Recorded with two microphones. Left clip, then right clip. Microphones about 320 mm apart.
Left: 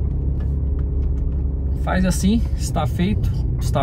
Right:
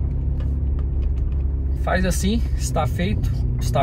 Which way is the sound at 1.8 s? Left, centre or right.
Centre.